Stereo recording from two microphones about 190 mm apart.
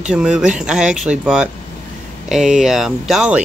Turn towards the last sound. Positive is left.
turn(degrees=-5)  # may be behind; listen again after turning